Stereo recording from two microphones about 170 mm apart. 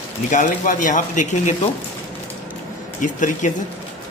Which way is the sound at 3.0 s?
50° left (ahead or behind).